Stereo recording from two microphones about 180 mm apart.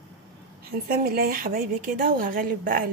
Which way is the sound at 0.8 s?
55° right (ahead or behind).